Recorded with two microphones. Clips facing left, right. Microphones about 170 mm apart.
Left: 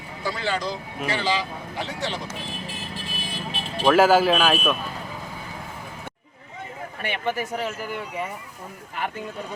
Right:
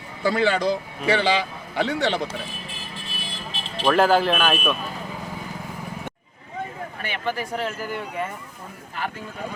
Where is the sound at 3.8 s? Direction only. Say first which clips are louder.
Left 2 dB; 5° left (ahead or behind).